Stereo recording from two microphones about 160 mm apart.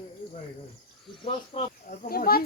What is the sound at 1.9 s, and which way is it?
Speech, 70° left (ahead or behind).